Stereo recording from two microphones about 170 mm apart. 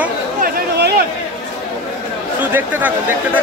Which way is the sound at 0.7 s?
75° right (ahead or behind).